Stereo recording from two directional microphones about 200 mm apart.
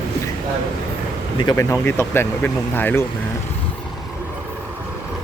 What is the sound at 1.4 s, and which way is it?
Speech, 20° left (ahead or behind).